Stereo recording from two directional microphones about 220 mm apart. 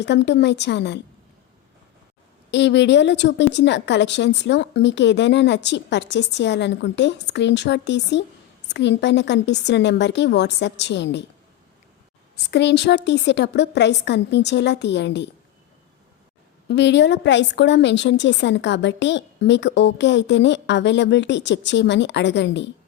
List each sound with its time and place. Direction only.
0.0 s a woman's voice: 50° left (ahead or behind)
2.5 s a woman's voice: 55° left (ahead or behind)
12.5 s a woman's voice: 50° left (ahead or behind)
16.6 s a woman's voice: 50° left (ahead or behind)